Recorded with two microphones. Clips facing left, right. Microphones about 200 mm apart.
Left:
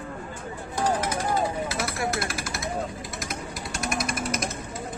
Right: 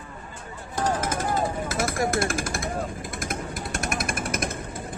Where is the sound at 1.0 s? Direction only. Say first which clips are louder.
Even; 50° right (ahead or behind).